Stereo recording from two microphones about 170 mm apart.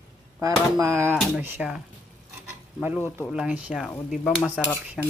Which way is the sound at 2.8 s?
10° right (ahead or behind).